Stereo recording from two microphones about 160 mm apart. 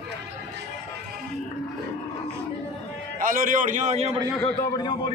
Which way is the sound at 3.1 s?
60° right (ahead or behind).